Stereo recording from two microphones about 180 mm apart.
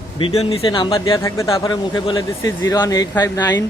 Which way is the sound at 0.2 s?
35° left (ahead or behind).